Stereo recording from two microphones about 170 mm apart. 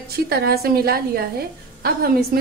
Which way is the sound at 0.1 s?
65° right (ahead or behind).